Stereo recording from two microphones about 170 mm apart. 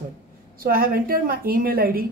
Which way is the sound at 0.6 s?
60° right (ahead or behind).